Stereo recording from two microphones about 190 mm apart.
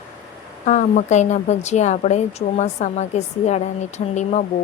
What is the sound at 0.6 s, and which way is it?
A woman's voice, 40° left (ahead or behind).